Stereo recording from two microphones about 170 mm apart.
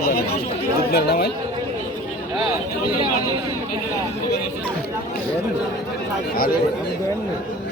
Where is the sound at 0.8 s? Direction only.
65° left (ahead or behind).